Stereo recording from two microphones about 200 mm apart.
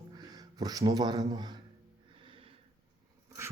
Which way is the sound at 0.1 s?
20° right (ahead or behind).